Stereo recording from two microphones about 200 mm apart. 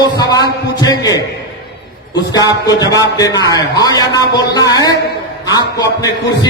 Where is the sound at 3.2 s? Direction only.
20° left (ahead or behind).